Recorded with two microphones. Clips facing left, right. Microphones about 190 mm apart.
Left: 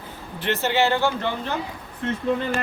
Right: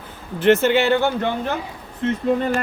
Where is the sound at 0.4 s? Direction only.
50° right (ahead or behind).